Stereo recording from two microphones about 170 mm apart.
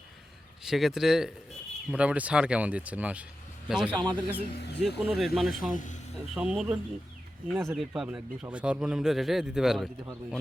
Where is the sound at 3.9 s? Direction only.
25° right (ahead or behind).